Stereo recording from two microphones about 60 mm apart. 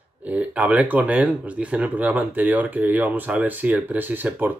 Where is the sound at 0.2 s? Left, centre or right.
Right.